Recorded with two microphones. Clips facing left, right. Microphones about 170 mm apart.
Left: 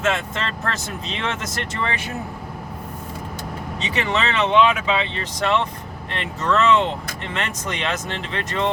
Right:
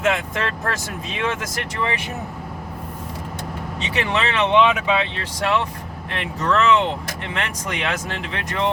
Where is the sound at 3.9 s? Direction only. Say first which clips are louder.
Even; 15° right (ahead or behind).